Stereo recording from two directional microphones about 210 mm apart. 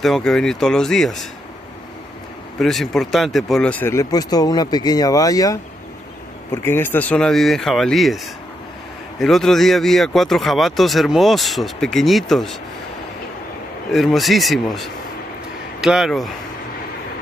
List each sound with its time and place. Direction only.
0.0 s speech: centre (ahead or behind)
2.6 s speech: centre (ahead or behind)
9.2 s speech: centre (ahead or behind)
13.9 s speech: centre (ahead or behind)